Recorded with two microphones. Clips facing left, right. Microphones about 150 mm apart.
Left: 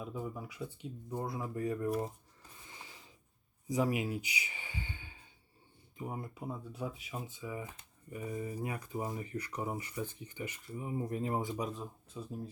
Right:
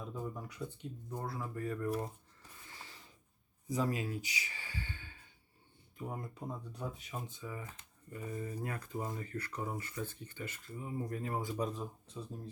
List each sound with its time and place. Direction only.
0.0 s speech: 5° left (ahead or behind)
1.1 s speech: 15° left (ahead or behind)
2.6 s a sound: 15° left (ahead or behind)
3.7 s speech: 15° left (ahead or behind)
11.5 s speech: centre (ahead or behind)